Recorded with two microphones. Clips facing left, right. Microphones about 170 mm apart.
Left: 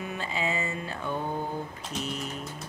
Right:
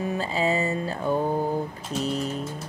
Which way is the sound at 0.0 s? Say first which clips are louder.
Right 7 dB; 35° right (ahead or behind).